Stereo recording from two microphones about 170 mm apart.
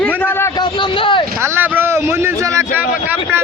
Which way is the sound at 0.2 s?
10° left (ahead or behind).